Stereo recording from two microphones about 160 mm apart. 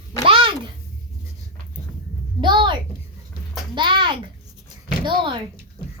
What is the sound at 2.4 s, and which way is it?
Speech, 30° right (ahead or behind).